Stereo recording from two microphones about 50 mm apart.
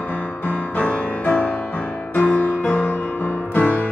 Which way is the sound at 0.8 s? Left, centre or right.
Left.